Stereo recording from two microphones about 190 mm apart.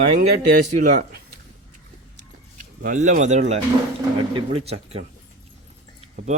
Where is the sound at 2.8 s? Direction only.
40° right (ahead or behind).